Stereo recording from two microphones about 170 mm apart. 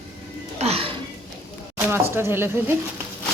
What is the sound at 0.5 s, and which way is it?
Music, 35° right (ahead or behind).